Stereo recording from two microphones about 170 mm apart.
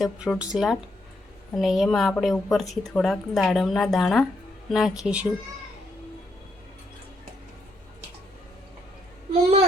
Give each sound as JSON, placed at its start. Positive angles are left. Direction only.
{"t": 0.0, "sound": "a woman's voice", "side_deg": -5}